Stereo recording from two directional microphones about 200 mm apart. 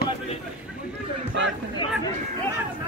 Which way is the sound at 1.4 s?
65° right (ahead or behind).